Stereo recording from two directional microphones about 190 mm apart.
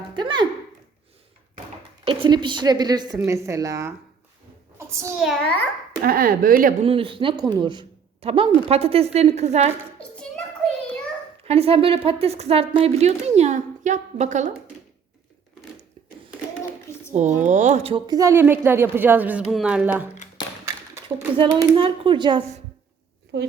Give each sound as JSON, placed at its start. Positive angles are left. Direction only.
{"t": 0.1, "sound": "a sound", "side_deg": -25}
{"t": 2.0, "sound": "a woman's voice", "side_deg": -25}
{"t": 4.8, "sound": "a sound", "side_deg": -15}
{"t": 5.2, "sound": "a child's voice", "side_deg": 0}
{"t": 6.0, "sound": "speech", "side_deg": -50}
{"t": 6.8, "sound": "a woman's voice", "side_deg": -30}
{"t": 11.4, "sound": "speech", "side_deg": -30}
{"t": 17.2, "sound": "a woman's voice", "side_deg": -40}
{"t": 20.7, "sound": "a sound", "side_deg": -15}
{"t": 21.3, "sound": "a woman's voice", "side_deg": -25}